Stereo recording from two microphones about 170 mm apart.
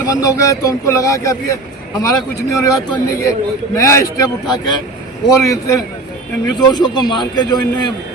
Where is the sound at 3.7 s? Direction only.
15° left (ahead or behind).